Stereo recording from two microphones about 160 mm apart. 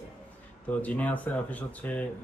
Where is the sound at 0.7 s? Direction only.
10° left (ahead or behind).